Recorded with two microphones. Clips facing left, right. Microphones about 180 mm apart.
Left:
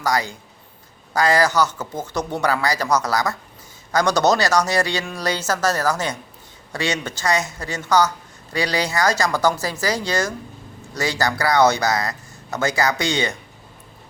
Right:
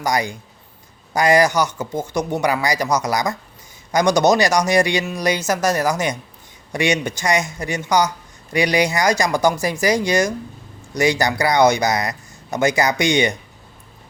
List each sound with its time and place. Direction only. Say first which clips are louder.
0.0 s speech: right 1 dB; 15° right (ahead or behind)